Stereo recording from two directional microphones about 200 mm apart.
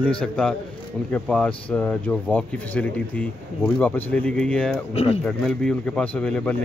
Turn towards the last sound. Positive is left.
turn(degrees=5)  # may be behind; listen again after turning